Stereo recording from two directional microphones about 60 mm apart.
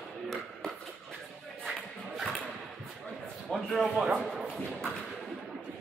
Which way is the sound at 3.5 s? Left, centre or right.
Centre.